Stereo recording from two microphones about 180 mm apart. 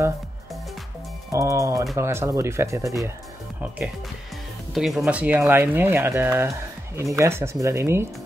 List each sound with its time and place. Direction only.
1.3 s speech: 15° right (ahead or behind)
4.7 s speech: centre (ahead or behind)